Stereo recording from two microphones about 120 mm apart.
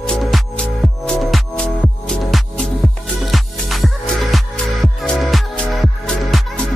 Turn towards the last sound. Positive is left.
turn(degrees=5)  # may be behind; listen again after turning